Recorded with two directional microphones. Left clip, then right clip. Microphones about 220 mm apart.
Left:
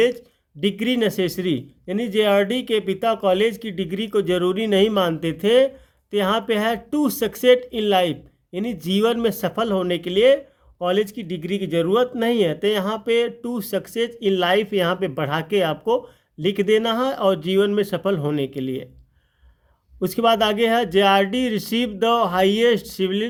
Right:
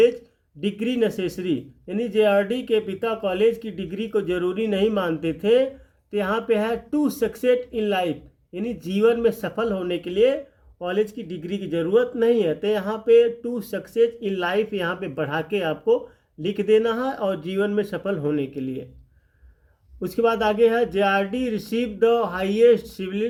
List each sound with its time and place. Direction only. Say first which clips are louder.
0.6 s speech: left 2 dB; 45° left (ahead or behind)
20.0 s speech: left 3 dB; 40° left (ahead or behind)